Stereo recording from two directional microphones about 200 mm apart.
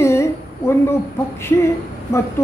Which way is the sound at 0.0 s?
15° left (ahead or behind).